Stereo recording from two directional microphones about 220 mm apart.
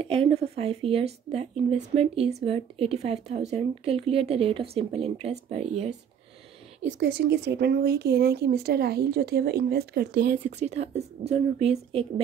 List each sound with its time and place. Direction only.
0.0 s speech: 25° right (ahead or behind)
7.0 s speech: 50° right (ahead or behind)
10.6 s speech: 30° right (ahead or behind)